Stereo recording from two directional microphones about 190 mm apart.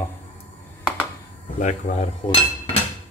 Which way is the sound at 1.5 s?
40° left (ahead or behind).